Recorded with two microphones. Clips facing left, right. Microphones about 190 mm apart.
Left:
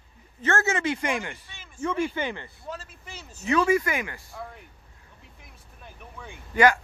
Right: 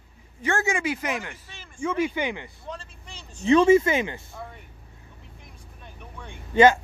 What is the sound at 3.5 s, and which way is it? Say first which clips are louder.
Speech: right 6 dB; 25° right (ahead or behind).